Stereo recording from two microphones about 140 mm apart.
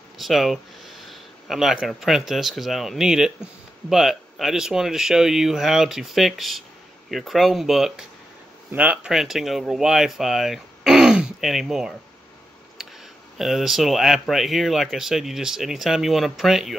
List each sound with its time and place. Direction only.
0.2 s speech: centre (ahead or behind)
13.4 s speech: centre (ahead or behind)